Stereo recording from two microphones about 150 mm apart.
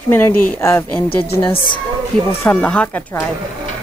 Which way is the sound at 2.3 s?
10° left (ahead or behind).